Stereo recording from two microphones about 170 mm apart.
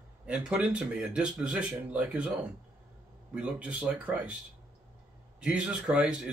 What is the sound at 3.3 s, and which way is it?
Speech, 5° right (ahead or behind).